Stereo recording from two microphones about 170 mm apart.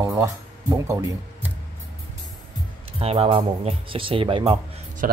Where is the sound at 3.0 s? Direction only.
35° right (ahead or behind).